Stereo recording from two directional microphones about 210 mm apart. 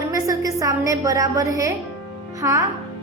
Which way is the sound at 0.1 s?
15° right (ahead or behind).